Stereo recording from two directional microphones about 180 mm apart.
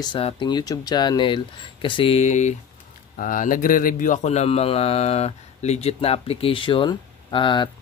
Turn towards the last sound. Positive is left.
turn(degrees=25)  # may be behind; listen again after turning